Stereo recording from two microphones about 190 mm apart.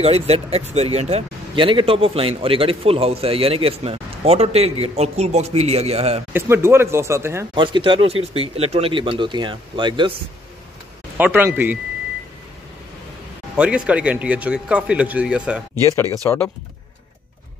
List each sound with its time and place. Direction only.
0.0 s speech: 35° right (ahead or behind)
6.3 s speech: 15° right (ahead or behind)
7.5 s speech: 25° right (ahead or behind)
11.1 s speech: 10° right (ahead or behind)
13.6 s speech: 5° right (ahead or behind)
16.2 s speech: 15° left (ahead or behind)